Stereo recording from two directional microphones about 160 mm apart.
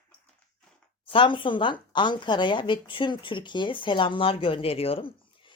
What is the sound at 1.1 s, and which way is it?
Speech, 30° left (ahead or behind).